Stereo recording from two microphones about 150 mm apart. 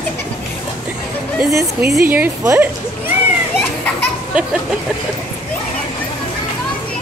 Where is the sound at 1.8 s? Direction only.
90° right.